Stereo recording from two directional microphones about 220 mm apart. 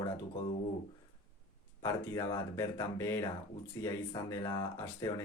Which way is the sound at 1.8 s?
15° left (ahead or behind).